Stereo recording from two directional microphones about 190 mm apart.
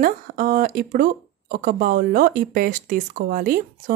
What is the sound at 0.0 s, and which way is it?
Speech, 45° right (ahead or behind).